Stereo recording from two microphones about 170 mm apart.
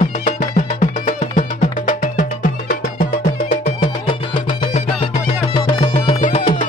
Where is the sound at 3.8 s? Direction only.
30° left (ahead or behind).